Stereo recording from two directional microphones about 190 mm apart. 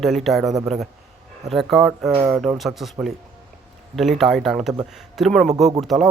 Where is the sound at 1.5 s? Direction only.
Centre (ahead or behind).